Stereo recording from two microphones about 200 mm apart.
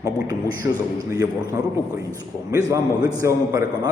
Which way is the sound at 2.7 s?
20° right (ahead or behind).